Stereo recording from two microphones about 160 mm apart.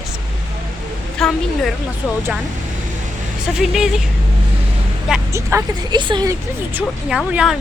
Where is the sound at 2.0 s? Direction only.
10° right (ahead or behind).